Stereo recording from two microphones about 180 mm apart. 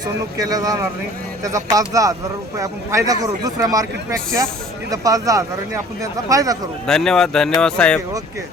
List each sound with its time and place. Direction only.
0.3 s speech: 20° right (ahead or behind)
6.8 s speech: 5° left (ahead or behind)